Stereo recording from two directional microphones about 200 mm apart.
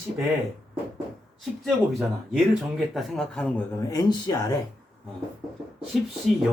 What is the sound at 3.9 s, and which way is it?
Speech, 20° left (ahead or behind).